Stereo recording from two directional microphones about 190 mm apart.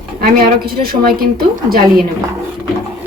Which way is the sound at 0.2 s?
50° right (ahead or behind).